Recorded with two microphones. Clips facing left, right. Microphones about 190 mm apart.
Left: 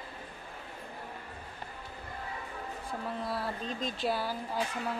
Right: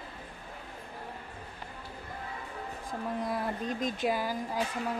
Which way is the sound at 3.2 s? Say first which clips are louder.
Right 3 dB; 15° right (ahead or behind).